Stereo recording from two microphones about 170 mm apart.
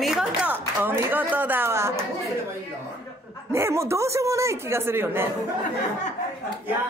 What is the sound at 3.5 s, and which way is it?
A man's voice, 15° right (ahead or behind).